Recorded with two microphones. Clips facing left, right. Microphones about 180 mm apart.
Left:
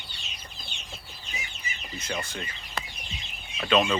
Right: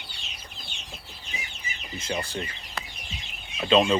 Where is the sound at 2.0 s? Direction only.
25° right (ahead or behind).